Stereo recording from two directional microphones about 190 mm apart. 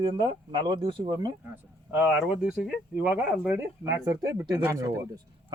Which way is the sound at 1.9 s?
10° right (ahead or behind).